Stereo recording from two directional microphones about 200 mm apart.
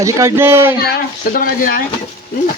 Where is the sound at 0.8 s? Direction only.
50° left (ahead or behind).